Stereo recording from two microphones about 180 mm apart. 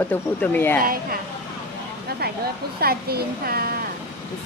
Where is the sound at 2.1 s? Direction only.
60° right (ahead or behind).